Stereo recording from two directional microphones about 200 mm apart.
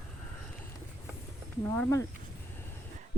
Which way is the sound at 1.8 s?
15° left (ahead or behind).